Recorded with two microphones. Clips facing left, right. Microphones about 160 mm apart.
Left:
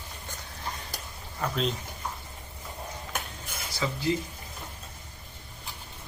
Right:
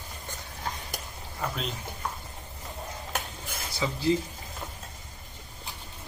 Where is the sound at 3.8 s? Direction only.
15° right (ahead or behind).